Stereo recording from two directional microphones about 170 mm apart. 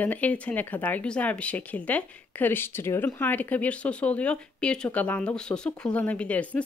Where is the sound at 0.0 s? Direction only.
10° left (ahead or behind).